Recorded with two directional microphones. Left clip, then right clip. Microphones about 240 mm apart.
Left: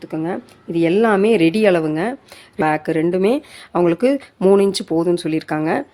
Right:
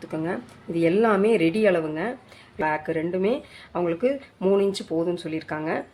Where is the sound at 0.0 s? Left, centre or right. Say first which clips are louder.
Left 5 dB; left.